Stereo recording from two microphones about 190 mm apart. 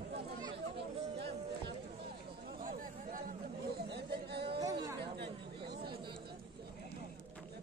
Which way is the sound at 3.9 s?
60° right (ahead or behind).